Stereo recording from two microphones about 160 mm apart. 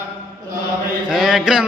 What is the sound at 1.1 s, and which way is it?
Mantra, centre (ahead or behind).